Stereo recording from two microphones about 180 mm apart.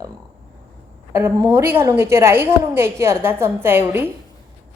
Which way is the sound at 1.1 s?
15° right (ahead or behind).